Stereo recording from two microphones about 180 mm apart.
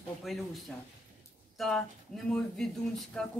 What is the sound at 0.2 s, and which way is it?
Speech, centre (ahead or behind).